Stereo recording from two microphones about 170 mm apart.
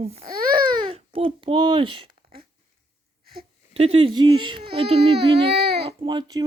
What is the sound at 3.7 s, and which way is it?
Speech, 35° right (ahead or behind).